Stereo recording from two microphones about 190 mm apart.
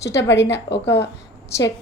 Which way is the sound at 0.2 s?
70° left (ahead or behind).